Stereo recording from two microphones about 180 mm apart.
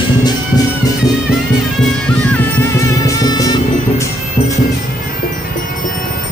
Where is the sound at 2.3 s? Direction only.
10° left (ahead or behind).